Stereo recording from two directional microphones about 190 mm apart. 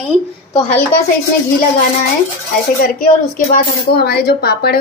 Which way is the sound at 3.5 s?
55° left (ahead or behind).